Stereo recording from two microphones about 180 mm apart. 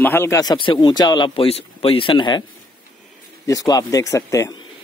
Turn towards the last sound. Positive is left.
turn(degrees=15)  # may be behind; listen again after turning